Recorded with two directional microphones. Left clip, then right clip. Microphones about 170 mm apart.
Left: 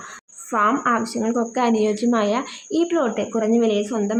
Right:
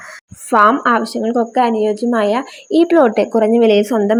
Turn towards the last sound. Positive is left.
turn(degrees=-40)  # may be behind; listen again after turning